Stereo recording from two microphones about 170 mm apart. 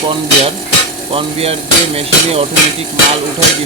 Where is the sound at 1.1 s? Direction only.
35° right (ahead or behind).